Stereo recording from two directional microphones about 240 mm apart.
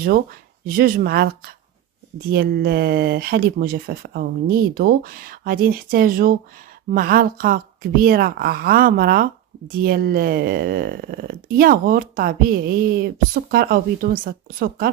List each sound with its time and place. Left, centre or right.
0.7 s speech: right